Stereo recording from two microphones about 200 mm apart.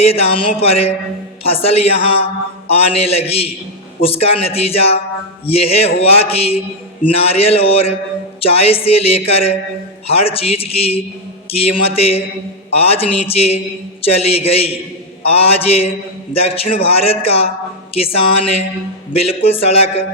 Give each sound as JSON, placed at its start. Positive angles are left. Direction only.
{"t": 0.0, "sound": "a man's voice", "side_deg": 30}